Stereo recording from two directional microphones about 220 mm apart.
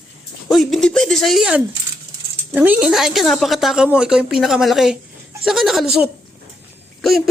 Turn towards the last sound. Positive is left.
turn(degrees=0)  # may be behind; listen again after turning